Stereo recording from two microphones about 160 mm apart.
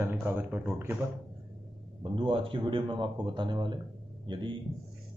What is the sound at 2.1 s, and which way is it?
A man's voice, 35° right (ahead or behind).